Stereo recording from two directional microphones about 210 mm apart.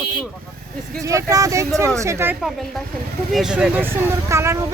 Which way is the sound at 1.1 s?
15° right (ahead or behind).